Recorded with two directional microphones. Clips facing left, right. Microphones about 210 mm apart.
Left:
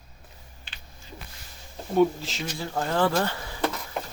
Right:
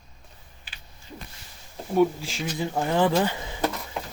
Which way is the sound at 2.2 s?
10° right (ahead or behind).